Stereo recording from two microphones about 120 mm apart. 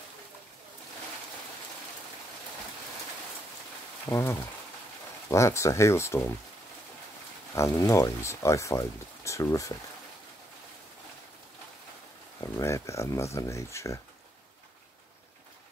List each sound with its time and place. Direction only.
4.1 s speech: 20° left (ahead or behind)
7.5 s speech: 25° left (ahead or behind)
12.4 s speech: 25° left (ahead or behind)